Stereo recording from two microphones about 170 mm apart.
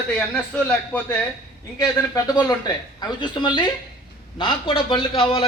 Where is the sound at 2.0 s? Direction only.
20° left (ahead or behind).